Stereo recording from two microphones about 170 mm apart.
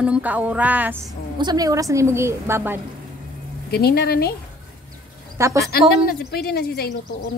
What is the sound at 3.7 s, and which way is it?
Speech, 70° left (ahead or behind).